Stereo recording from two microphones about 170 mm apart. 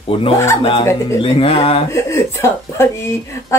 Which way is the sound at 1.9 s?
15° left (ahead or behind).